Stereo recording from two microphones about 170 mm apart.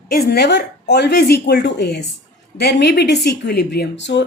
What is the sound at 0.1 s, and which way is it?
Speech, 70° left (ahead or behind).